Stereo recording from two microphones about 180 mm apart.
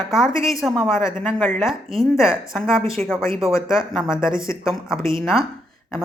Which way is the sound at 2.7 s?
30° right (ahead or behind).